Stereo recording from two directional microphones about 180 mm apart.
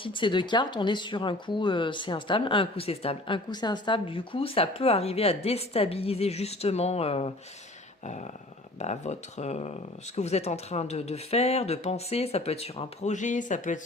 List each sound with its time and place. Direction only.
0.0 s speech: 25° left (ahead or behind); by 13.7 s 45° left (ahead or behind)